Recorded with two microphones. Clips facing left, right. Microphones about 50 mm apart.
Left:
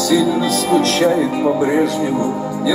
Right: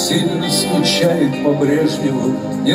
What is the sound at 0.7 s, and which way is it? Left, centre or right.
Music, left.